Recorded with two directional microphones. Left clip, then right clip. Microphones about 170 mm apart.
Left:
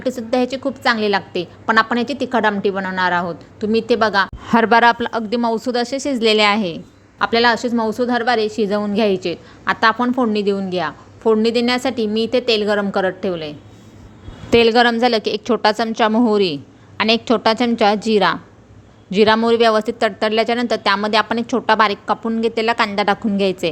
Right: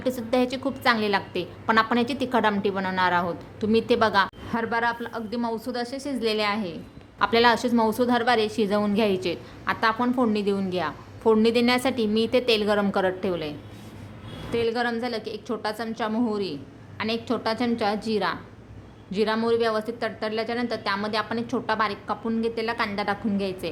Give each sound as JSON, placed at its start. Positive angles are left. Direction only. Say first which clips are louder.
{"t": 0.0, "sound": "a woman's voice", "louder": "left 5 dB", "side_deg": 25}
{"t": 4.4, "sound": "a woman's voice", "louder": "left 13 dB", "side_deg": 50}
{"t": 7.2, "sound": "a woman's voice", "louder": "left 5 dB", "side_deg": 25}
{"t": 9.6, "sound": "a woman's voice", "louder": "left 8 dB", "side_deg": 35}
{"t": 14.5, "sound": "a woman's voice", "louder": "left 13 dB", "side_deg": 55}